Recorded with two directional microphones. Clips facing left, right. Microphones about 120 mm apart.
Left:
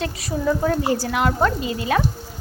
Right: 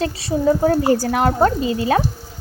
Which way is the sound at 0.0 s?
35° right (ahead or behind).